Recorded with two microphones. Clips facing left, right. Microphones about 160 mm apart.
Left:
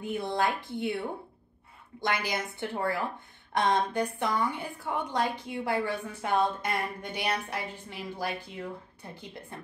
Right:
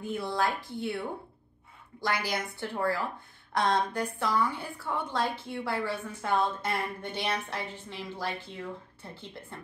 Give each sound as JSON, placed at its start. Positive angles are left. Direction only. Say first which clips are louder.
{"t": 0.0, "sound": "a woman's voice", "louder": "left 1 dB", "side_deg": 20}
{"t": 2.0, "sound": "a woman's voice", "louder": "even", "side_deg": 20}